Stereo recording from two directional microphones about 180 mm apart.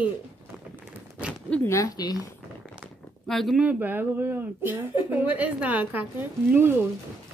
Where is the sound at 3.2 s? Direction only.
Centre (ahead or behind).